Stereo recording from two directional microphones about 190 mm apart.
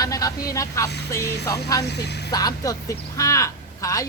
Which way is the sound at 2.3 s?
20° left (ahead or behind).